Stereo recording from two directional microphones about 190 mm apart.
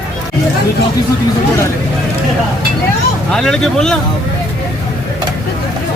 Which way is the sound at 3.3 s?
5° left (ahead or behind).